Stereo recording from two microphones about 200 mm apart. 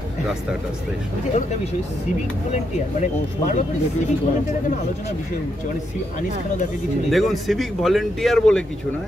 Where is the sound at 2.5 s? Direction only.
35° left (ahead or behind).